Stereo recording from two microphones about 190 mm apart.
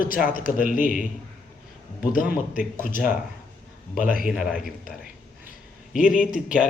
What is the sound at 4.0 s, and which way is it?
Speech, 45° left (ahead or behind).